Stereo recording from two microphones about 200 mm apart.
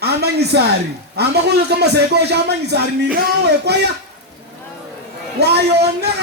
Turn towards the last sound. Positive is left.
turn(degrees=-55)  # may be behind; listen again after turning